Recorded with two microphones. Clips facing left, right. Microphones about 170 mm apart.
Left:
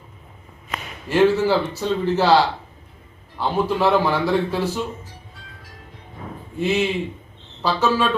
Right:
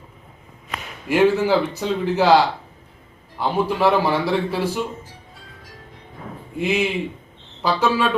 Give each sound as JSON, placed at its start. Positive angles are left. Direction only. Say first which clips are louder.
{"t": 1.0, "sound": "a man's voice", "louder": "even", "side_deg": -15}
{"t": 6.6, "sound": "a man's voice", "louder": "even", "side_deg": -10}